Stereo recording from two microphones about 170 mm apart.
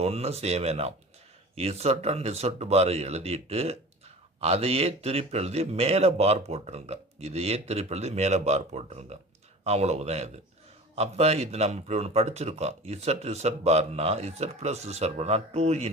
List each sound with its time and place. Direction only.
0.0 s speech: 35° right (ahead or behind)